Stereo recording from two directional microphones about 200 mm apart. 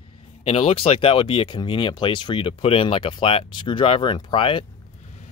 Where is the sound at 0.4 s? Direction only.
30° left (ahead or behind).